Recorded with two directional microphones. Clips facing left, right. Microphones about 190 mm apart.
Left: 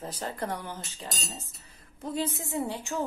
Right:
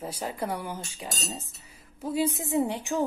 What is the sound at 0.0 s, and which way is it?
A woman's voice, 10° right (ahead or behind).